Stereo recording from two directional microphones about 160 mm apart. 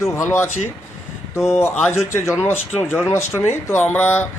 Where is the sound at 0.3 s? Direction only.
15° left (ahead or behind).